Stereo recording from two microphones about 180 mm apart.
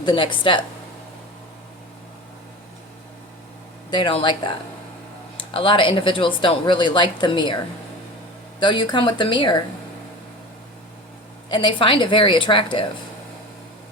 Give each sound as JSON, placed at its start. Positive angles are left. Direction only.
{"t": 0.0, "sound": "a woman's voice", "side_deg": 25}
{"t": 3.9, "sound": "a woman's voice", "side_deg": 25}
{"t": 5.4, "sound": "a woman's voice", "side_deg": 30}
{"t": 8.6, "sound": "a woman's voice", "side_deg": 25}
{"t": 11.4, "sound": "a woman's voice", "side_deg": 25}